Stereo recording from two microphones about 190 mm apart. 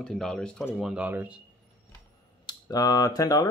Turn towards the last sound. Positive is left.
turn(degrees=20)  # may be behind; listen again after turning